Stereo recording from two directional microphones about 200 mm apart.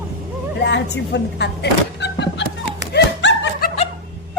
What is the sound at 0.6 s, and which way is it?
Speech, 55° left (ahead or behind).